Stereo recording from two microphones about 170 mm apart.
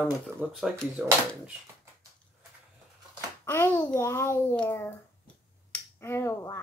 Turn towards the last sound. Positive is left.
turn(degrees=15)  # may be behind; listen again after turning